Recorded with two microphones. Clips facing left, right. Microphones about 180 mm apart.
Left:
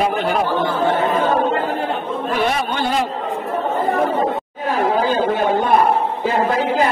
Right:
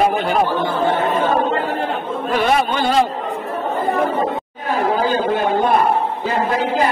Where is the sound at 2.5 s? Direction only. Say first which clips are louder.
Right 3 dB; 90° right.